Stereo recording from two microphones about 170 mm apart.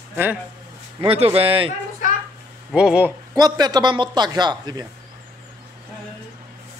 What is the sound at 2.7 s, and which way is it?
Speech, 5° right (ahead or behind).